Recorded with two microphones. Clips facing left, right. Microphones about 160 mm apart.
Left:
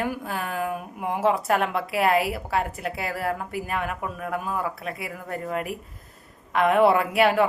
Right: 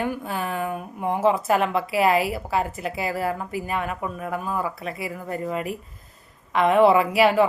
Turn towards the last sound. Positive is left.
turn(degrees=0)  # may be behind; listen again after turning